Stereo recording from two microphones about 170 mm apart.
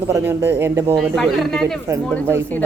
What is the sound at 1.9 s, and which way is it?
Speech, 20° right (ahead or behind).